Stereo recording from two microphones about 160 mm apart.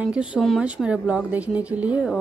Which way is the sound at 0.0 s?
5° right (ahead or behind).